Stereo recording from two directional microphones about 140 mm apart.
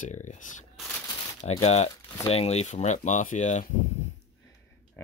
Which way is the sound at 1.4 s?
50° left (ahead or behind).